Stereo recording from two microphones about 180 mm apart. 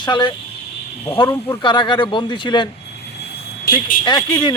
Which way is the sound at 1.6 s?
25° left (ahead or behind).